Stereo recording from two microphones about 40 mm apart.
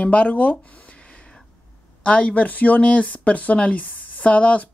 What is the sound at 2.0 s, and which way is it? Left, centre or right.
Speech, left.